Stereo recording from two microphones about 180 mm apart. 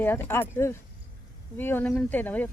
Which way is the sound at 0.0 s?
10° left (ahead or behind).